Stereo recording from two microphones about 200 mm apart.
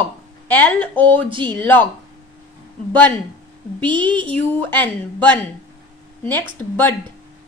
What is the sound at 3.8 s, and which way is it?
Speech, 25° right (ahead or behind).